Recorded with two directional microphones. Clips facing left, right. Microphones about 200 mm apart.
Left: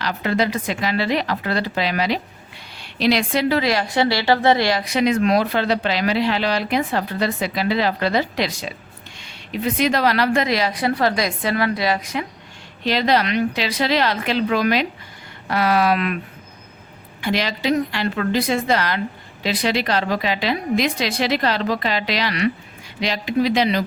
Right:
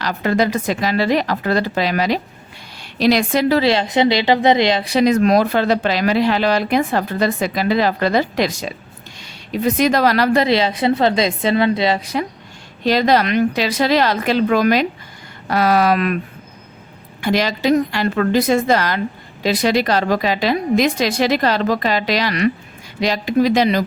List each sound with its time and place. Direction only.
0.0 s a woman's voice: 45° right (ahead or behind)
3.6 s a woman's voice: 25° right (ahead or behind); by 10.4 s 45° right (ahead or behind)
10.4 s a woman's voice: 25° right (ahead or behind)
12.8 s a woman's voice: 45° right (ahead or behind)
17.2 s a woman's voice: 45° right (ahead or behind)